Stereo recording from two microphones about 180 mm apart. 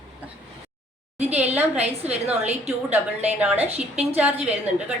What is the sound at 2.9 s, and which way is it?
A woman's voice, 10° right (ahead or behind).